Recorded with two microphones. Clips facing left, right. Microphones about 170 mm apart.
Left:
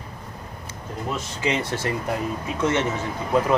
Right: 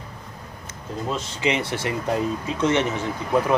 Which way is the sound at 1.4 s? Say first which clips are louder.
Right 1 dB; 20° right (ahead or behind).